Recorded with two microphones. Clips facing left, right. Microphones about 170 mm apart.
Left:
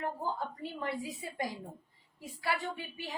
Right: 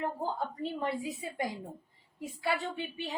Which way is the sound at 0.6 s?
25° right (ahead or behind).